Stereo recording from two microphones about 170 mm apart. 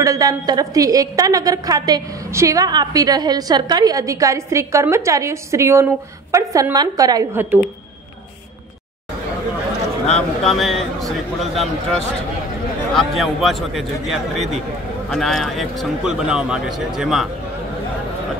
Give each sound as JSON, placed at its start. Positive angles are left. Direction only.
{"t": 0.0, "sound": "a woman's voice", "side_deg": -20}
{"t": 10.0, "sound": "a man's voice", "side_deg": 5}